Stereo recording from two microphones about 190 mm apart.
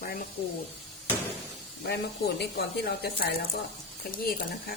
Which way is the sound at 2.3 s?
55° left (ahead or behind).